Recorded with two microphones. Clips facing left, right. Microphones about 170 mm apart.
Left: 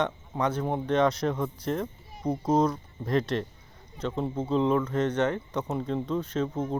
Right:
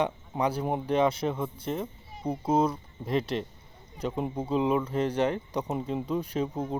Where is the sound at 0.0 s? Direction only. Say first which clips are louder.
Even; 10° right (ahead or behind).